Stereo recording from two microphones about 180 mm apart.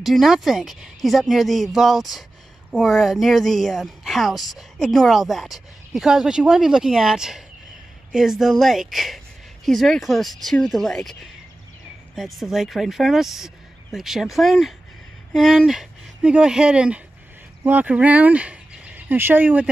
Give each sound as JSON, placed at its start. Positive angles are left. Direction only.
{"t": 0.0, "sound": "speech", "side_deg": 0}
{"t": 12.2, "sound": "speech", "side_deg": 0}